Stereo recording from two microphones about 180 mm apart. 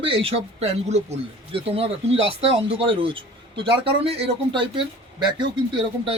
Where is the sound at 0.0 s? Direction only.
30° right (ahead or behind).